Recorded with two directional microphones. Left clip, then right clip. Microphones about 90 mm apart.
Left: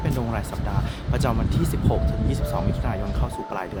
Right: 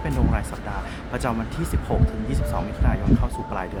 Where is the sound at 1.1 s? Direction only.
25° left (ahead or behind).